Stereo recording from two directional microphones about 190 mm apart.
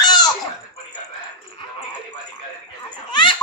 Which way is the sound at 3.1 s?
25° left (ahead or behind).